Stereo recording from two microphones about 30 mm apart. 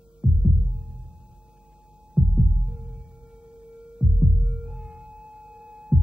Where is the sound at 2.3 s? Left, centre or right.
Right.